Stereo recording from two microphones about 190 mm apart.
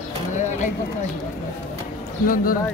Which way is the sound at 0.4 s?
40° left (ahead or behind).